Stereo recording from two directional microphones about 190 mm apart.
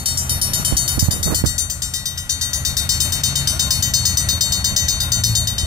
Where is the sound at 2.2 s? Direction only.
15° right (ahead or behind).